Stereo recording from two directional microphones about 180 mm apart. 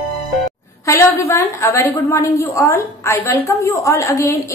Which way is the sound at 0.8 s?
15° left (ahead or behind).